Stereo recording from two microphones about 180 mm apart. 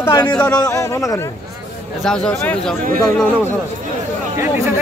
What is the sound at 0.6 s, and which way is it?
Speech, 15° left (ahead or behind).